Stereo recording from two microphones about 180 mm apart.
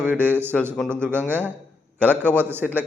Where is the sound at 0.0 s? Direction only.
10° right (ahead or behind).